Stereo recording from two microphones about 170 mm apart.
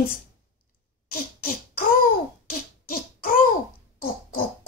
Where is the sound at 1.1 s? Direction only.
60° left (ahead or behind).